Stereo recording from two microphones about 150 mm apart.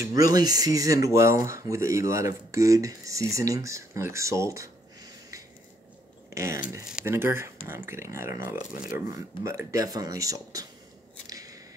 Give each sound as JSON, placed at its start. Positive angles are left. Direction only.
{"t": 0.1, "sound": "speech", "side_deg": -25}
{"t": 6.3, "sound": "speech", "side_deg": -20}
{"t": 11.2, "sound": "scissors", "side_deg": -25}